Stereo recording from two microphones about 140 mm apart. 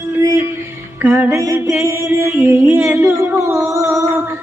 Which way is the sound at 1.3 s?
20° right (ahead or behind).